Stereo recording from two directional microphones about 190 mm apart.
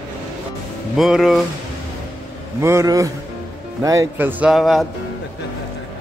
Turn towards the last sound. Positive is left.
turn(degrees=0)  # may be behind; listen again after turning